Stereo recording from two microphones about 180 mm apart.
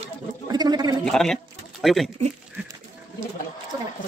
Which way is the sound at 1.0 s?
5° left (ahead or behind).